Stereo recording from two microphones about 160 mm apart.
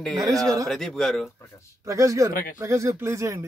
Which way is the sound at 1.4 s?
15° left (ahead or behind).